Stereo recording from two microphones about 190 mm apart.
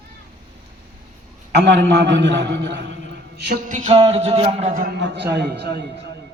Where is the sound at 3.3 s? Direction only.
60° right (ahead or behind).